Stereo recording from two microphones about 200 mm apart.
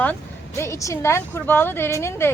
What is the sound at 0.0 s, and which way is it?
A woman's voice, 10° left (ahead or behind).